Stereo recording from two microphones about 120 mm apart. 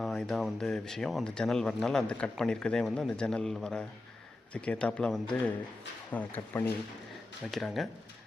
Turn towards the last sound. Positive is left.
turn(degrees=0)  # may be behind; listen again after turning